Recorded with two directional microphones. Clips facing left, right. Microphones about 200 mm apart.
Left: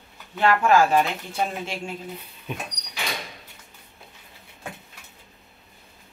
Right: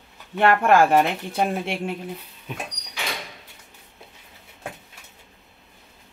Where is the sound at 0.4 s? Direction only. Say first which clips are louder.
Right 2 dB; 55° right (ahead or behind).